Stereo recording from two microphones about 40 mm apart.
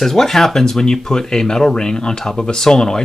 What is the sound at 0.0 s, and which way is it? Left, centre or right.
Speech, centre.